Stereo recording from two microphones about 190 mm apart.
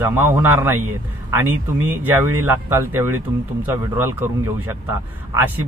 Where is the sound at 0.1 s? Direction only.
10° right (ahead or behind).